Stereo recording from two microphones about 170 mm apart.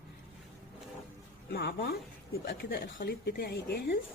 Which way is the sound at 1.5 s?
65° left (ahead or behind).